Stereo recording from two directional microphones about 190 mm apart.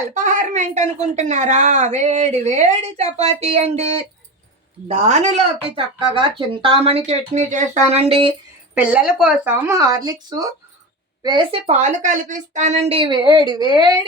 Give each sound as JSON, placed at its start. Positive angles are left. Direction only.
{"t": 0.1, "sound": "a woman's voice", "side_deg": -45}
{"t": 8.7, "sound": "a woman's voice", "side_deg": -5}
{"t": 11.6, "sound": "a woman's voice", "side_deg": -40}